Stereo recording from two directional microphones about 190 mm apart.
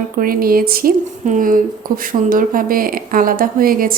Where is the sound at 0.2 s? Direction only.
50° right (ahead or behind).